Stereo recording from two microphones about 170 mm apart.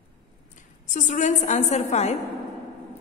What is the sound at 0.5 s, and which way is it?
A woman's voice, 45° left (ahead or behind).